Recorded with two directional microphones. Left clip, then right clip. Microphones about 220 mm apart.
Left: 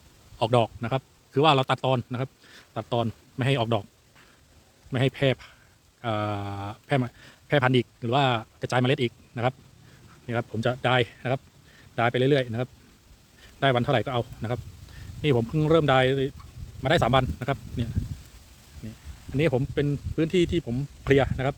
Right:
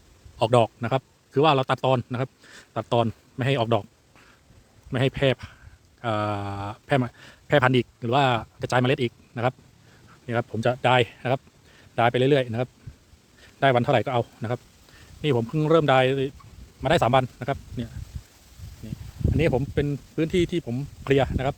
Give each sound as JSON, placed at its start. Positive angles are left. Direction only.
{"t": 0.3, "sound": "a man's voice", "side_deg": -15}
{"t": 3.3, "sound": "speech", "side_deg": -10}
{"t": 4.9, "sound": "a man's voice", "side_deg": -15}
{"t": 19.4, "sound": "speech", "side_deg": -10}